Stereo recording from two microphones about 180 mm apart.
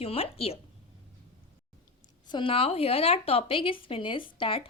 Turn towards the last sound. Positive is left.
turn(degrees=30)  # may be behind; listen again after turning